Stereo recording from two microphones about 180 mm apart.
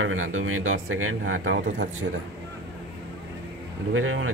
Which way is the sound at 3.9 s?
90° right.